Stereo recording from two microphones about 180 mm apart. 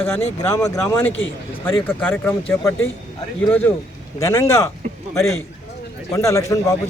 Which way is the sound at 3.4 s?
10° left (ahead or behind).